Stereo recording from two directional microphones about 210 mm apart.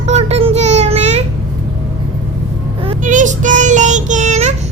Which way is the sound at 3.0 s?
35° right (ahead or behind).